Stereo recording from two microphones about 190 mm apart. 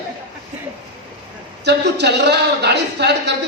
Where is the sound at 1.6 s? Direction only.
60° right (ahead or behind).